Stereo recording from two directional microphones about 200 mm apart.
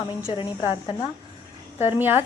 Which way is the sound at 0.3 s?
25° left (ahead or behind).